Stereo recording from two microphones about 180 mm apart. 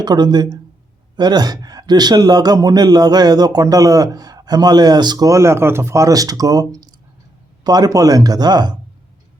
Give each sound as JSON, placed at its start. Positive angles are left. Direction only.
{"t": 0.0, "sound": "speech", "side_deg": -25}